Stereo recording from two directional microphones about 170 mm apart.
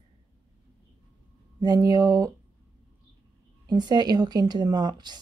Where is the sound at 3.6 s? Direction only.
25° right (ahead or behind).